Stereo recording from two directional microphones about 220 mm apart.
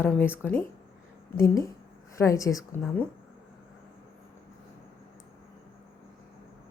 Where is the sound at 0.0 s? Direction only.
10° left (ahead or behind).